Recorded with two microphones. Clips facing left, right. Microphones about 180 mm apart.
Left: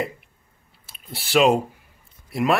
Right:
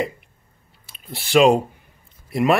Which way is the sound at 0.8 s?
Centre (ahead or behind).